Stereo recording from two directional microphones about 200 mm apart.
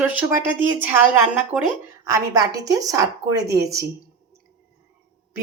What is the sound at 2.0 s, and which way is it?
Speech, 15° right (ahead or behind).